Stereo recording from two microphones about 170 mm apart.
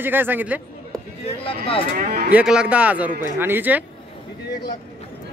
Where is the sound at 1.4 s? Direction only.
35° left (ahead or behind).